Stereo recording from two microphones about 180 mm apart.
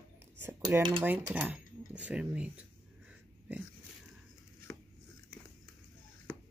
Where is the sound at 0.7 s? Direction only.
10° right (ahead or behind).